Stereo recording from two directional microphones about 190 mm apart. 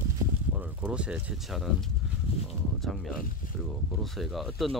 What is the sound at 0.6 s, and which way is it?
Speech, 10° right (ahead or behind).